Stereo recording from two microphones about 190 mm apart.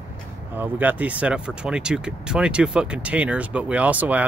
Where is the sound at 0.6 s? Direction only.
10° right (ahead or behind).